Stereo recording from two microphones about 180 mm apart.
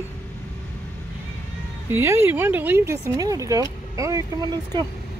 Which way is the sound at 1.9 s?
15° right (ahead or behind).